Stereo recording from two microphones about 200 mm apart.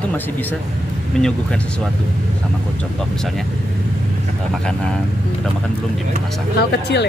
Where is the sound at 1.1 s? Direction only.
5° left (ahead or behind).